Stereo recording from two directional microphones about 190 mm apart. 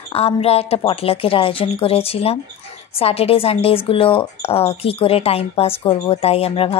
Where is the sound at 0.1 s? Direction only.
30° left (ahead or behind).